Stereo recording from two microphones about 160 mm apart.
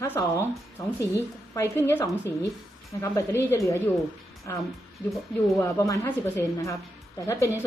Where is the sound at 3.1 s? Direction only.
15° left (ahead or behind).